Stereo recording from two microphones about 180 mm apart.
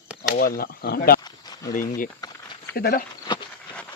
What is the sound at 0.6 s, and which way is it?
Speech, 55° left (ahead or behind).